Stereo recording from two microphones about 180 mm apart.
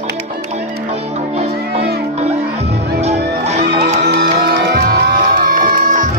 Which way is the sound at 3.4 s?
35° right (ahead or behind).